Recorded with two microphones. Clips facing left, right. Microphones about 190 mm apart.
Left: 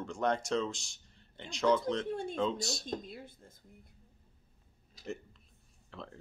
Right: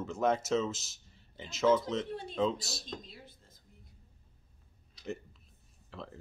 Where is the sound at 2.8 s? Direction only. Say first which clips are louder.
Left 6 dB; 55° left (ahead or behind).